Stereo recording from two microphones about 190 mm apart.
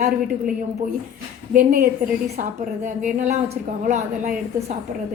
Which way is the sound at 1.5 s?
50° right (ahead or behind).